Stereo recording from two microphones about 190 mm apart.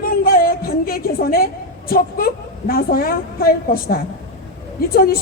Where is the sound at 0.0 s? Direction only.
50° left (ahead or behind).